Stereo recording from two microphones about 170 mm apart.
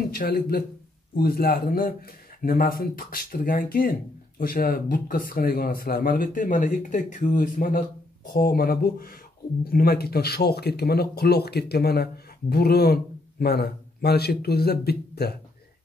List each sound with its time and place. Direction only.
0.1 s speech: 60° left (ahead or behind)